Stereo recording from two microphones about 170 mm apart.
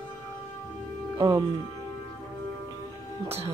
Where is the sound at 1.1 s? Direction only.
25° right (ahead or behind).